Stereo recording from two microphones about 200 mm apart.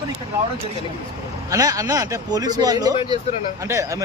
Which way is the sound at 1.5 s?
15° right (ahead or behind).